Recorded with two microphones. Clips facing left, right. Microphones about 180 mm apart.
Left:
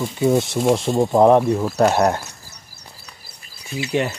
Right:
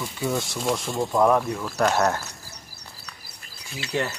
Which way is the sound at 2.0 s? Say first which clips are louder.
Left 5 dB; 20° left (ahead or behind).